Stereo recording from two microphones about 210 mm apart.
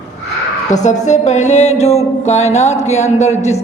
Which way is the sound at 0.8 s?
35° left (ahead or behind).